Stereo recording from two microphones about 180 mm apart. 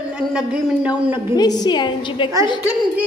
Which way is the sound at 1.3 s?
20° left (ahead or behind).